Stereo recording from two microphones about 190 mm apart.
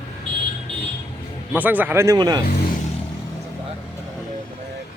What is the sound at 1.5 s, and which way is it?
Speech, 10° right (ahead or behind).